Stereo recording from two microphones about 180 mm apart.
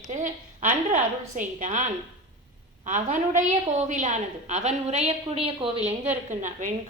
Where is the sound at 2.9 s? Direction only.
45° right (ahead or behind).